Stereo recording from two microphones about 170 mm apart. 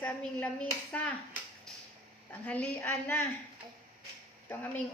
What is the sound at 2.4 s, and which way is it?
Speech, 10° left (ahead or behind).